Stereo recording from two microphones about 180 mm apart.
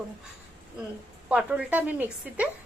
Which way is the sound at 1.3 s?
5° right (ahead or behind).